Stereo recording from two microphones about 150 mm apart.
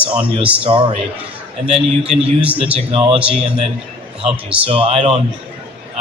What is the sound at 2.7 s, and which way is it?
Speech, 40° right (ahead or behind).